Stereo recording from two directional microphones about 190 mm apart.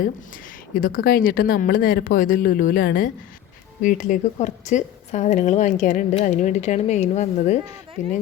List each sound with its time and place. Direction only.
0.7 s speech: 45° left (ahead or behind)